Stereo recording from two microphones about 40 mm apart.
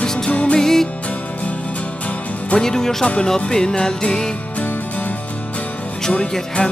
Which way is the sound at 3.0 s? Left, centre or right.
Left.